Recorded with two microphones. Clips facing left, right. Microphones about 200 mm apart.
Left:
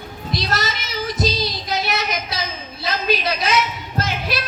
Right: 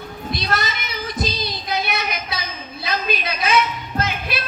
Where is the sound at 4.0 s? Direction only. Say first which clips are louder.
Left 1 dB; 55° right (ahead or behind).